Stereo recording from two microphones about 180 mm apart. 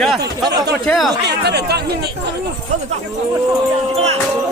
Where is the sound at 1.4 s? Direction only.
65° right (ahead or behind).